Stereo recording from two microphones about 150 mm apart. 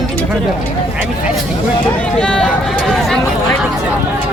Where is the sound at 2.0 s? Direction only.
5° left (ahead or behind).